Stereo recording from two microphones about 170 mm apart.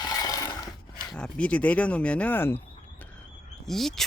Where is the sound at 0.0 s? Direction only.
20° left (ahead or behind).